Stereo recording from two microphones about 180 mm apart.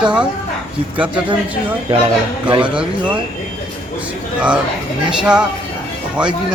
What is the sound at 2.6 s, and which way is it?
Speech, 5° right (ahead or behind).